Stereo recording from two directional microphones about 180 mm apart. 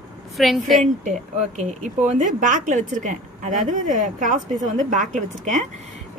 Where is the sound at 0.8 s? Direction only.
45° right (ahead or behind).